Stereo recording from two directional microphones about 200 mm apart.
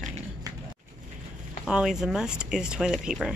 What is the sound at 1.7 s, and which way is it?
Speech, 5° right (ahead or behind).